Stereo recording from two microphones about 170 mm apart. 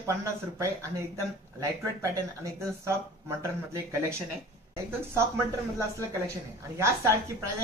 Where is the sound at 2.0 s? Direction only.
15° right (ahead or behind).